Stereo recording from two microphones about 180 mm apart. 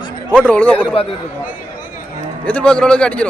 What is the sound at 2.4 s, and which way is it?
Speech, 10° left (ahead or behind).